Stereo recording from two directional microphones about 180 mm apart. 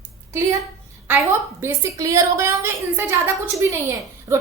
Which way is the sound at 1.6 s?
15° right (ahead or behind).